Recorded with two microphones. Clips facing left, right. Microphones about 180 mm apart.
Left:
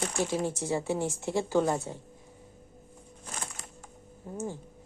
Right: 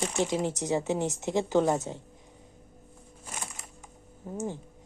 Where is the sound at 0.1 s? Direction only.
20° right (ahead or behind).